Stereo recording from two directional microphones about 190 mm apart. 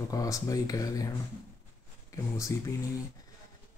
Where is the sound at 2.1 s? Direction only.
15° left (ahead or behind).